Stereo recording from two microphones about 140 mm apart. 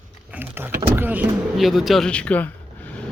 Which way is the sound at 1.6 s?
Centre (ahead or behind).